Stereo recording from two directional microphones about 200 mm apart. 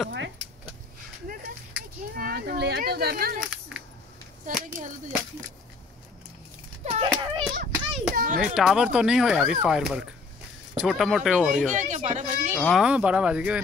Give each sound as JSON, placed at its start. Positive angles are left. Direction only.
{"t": 2.1, "sound": "a sound", "side_deg": -50}
{"t": 4.7, "sound": "a child's voice", "side_deg": -40}
{"t": 6.8, "sound": "a sound", "side_deg": -30}
{"t": 7.5, "sound": "hands", "side_deg": -50}
{"t": 8.4, "sound": "speech", "side_deg": 0}
{"t": 11.7, "sound": "a child's voice", "side_deg": -35}
{"t": 12.5, "sound": "speech", "side_deg": 0}